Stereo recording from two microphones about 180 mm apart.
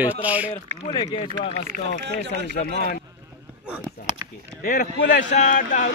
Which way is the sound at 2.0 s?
70° right (ahead or behind).